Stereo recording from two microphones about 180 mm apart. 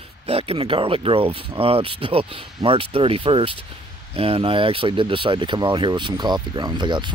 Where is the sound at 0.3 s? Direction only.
30° right (ahead or behind).